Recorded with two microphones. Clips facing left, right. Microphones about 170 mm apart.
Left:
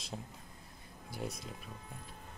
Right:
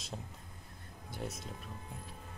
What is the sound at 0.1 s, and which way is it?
Speech, centre (ahead or behind).